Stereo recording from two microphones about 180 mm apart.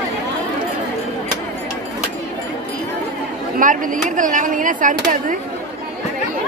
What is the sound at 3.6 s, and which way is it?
Speech, 45° right (ahead or behind).